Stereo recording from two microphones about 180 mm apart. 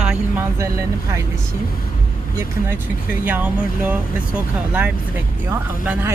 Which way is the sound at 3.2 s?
10° right (ahead or behind).